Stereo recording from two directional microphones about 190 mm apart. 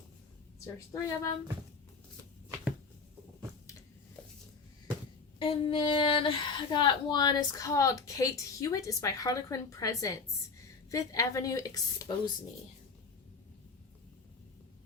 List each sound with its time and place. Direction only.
0.6 s speech: 15° left (ahead or behind)
5.4 s speech: 25° left (ahead or behind)